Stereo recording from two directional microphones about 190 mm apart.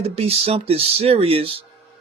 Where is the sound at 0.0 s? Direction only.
30° right (ahead or behind).